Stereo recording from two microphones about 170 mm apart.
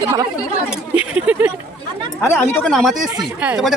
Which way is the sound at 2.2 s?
15° left (ahead or behind).